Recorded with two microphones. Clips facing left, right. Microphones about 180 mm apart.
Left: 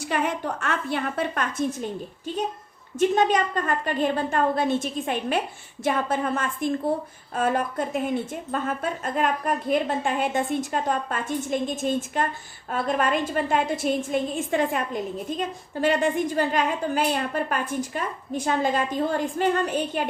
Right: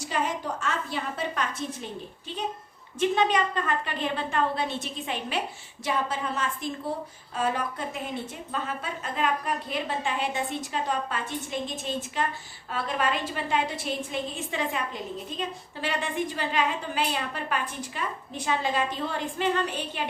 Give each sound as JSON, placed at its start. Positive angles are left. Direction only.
{"t": 0.0, "sound": "a woman's voice", "side_deg": 60}